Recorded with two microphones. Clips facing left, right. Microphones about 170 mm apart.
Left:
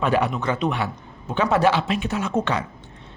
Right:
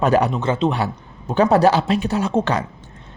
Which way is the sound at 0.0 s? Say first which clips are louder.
Right 4 dB; 40° right (ahead or behind).